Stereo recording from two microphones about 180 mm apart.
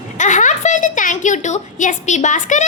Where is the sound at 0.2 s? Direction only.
45° left (ahead or behind).